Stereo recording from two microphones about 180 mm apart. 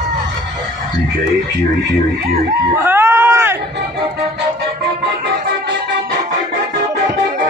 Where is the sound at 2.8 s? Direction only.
10° right (ahead or behind).